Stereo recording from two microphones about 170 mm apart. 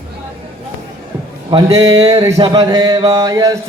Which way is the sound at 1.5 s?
25° right (ahead or behind).